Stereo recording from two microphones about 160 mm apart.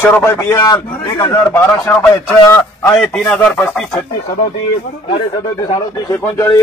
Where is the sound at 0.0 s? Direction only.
15° left (ahead or behind).